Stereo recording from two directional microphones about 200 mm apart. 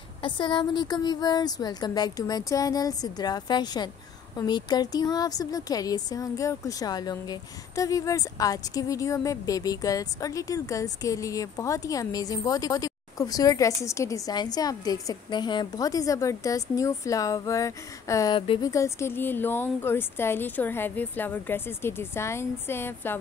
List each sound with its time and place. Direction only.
0.2 s a woman's voice: 25° left (ahead or behind)